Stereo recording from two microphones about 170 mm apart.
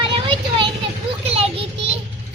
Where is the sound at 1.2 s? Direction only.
35° right (ahead or behind).